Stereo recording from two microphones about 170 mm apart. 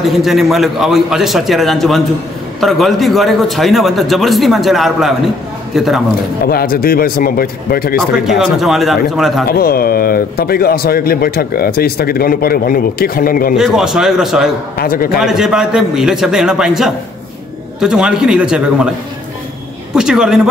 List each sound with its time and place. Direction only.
0.0 s a man's voice: centre (ahead or behind)
6.4 s speech: 60° left (ahead or behind)
8.0 s a man's voice: centre (ahead or behind)
9.5 s speech: 60° left (ahead or behind)
13.6 s a man's voice: centre (ahead or behind)
14.8 s speech: 60° left (ahead or behind)
15.1 s a man's voice: 5° right (ahead or behind)
19.9 s a man's voice: 5° right (ahead or behind)